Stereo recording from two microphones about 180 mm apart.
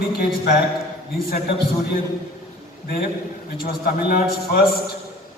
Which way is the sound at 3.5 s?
55° left (ahead or behind).